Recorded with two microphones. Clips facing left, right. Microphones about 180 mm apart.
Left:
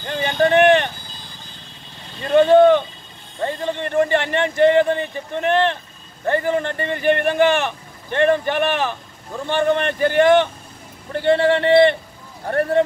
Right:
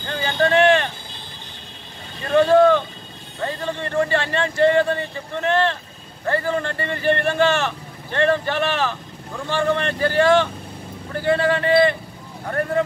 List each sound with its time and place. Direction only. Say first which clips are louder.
0.1 s a sound: left 2 dB; 15° left (ahead or behind)
2.2 s vehicle: left 3 dB; 20° left (ahead or behind)
3.3 s speech: left 3 dB; 20° left (ahead or behind)